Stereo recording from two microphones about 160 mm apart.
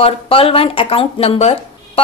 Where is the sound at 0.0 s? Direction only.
35° left (ahead or behind).